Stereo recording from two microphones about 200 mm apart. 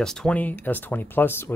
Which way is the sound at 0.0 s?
5° left (ahead or behind).